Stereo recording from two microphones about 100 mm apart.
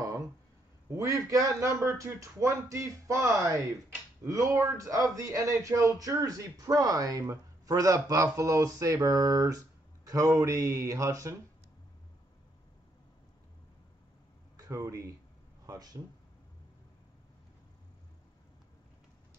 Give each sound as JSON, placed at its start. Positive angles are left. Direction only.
{"t": 0.8, "sound": "a man's voice", "side_deg": -30}
{"t": 14.6, "sound": "speech", "side_deg": -30}